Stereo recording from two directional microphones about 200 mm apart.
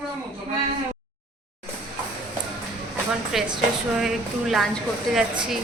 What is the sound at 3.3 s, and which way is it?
Speech, centre (ahead or behind).